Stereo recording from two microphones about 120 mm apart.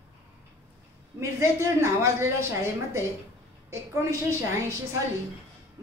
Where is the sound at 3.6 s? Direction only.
25° right (ahead or behind).